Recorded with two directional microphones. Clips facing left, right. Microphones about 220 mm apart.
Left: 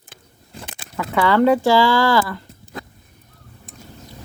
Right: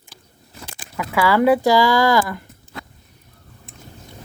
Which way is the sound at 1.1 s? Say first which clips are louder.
Even; 10° right (ahead or behind).